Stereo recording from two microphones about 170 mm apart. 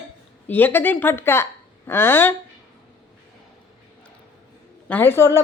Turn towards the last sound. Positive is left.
turn(degrees=15)  # may be behind; listen again after turning